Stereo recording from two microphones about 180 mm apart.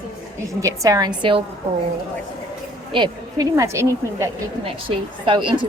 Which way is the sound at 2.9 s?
25° right (ahead or behind).